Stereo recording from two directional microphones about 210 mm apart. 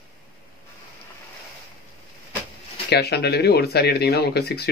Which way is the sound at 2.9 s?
50° left (ahead or behind).